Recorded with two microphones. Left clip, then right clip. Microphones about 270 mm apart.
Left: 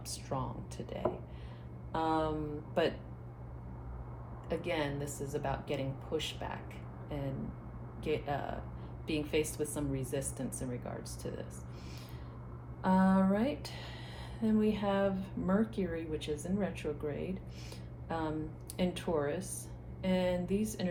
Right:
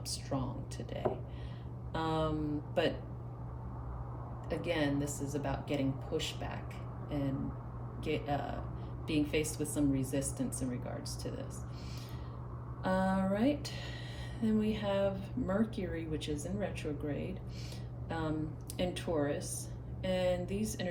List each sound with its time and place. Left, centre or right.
0.1 s a woman's voice: centre
1.9 s a sound: centre
4.4 s a woman's voice: centre
8.0 s a woman's voice: centre
12.8 s a woman's voice: centre